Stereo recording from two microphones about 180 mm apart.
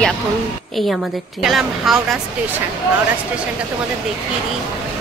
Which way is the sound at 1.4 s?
Centre (ahead or behind).